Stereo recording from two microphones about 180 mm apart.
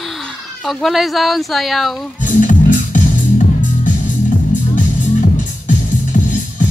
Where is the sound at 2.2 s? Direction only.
45° left (ahead or behind).